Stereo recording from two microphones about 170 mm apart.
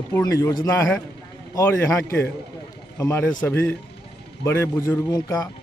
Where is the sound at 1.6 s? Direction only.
15° left (ahead or behind).